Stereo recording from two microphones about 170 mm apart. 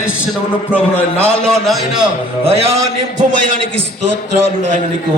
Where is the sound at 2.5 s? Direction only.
35° right (ahead or behind).